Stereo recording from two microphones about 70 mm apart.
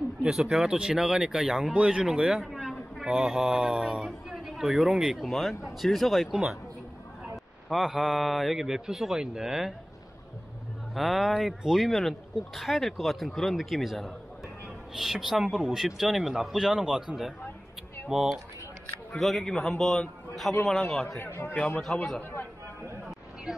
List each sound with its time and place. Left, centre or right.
0.2 s a man's voice: centre
7.7 s a man's voice: centre
11.0 s a man's voice: centre
20.8 s a man's voice: centre
21.2 s a man's voice: left
21.5 s a man's voice: left